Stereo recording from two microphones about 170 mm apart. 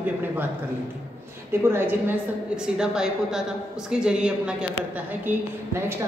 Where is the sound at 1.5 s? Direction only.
15° right (ahead or behind).